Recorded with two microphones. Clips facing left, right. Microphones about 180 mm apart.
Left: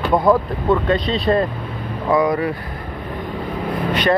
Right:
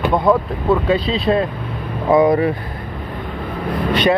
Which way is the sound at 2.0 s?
25° right (ahead or behind).